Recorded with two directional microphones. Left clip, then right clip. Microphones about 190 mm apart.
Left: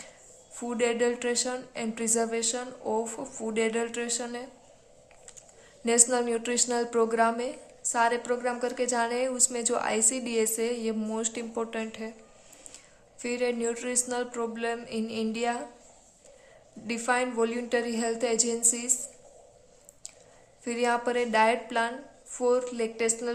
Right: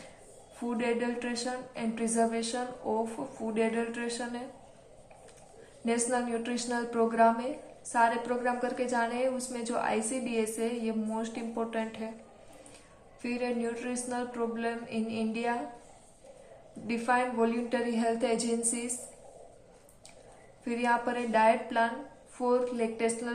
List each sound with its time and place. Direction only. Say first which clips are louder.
0.7 s a woman's voice: left 5 dB; 35° left (ahead or behind)
5.8 s a woman's voice: left 5 dB; 30° left (ahead or behind)
13.2 s a woman's voice: left 4 dB; 35° left (ahead or behind)
16.8 s a woman's voice: left 1 dB; 30° left (ahead or behind)
20.7 s a woman's voice: left 2 dB; 30° left (ahead or behind)